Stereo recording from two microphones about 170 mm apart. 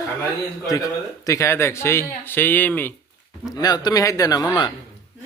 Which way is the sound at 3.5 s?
25° left (ahead or behind).